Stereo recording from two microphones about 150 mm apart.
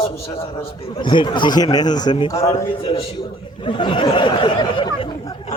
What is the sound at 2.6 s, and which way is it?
A man's voice, 40° left (ahead or behind).